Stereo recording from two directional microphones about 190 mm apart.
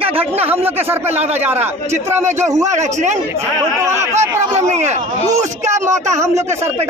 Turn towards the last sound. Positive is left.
turn(degrees=-35)  # may be behind; listen again after turning